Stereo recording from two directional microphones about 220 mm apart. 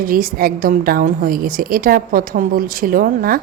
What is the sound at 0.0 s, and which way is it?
A woman's voice, 40° right (ahead or behind).